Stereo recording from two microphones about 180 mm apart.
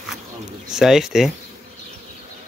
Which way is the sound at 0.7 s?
5° right (ahead or behind).